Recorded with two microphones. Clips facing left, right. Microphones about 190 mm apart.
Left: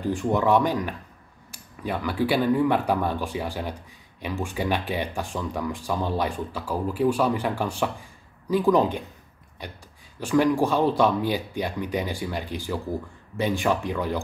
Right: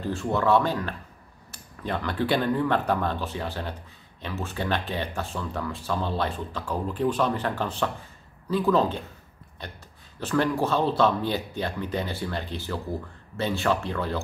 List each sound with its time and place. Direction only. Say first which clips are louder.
0.0 s speech: left 2 dB; 15° left (ahead or behind)